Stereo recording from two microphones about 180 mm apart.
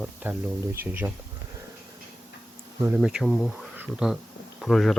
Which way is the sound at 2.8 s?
5° right (ahead or behind).